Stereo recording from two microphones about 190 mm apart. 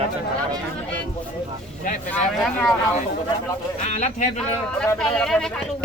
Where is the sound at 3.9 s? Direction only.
40° left (ahead or behind).